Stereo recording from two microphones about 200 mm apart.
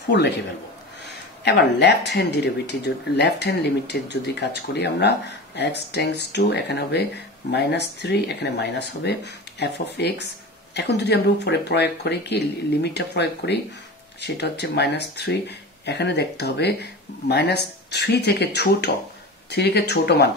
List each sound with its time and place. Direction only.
1.4 s speech: 55° left (ahead or behind)